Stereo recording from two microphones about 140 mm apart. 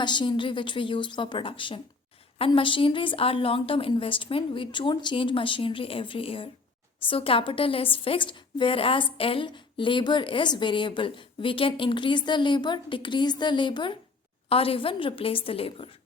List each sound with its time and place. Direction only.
0.0 s a woman's voice: 35° left (ahead or behind)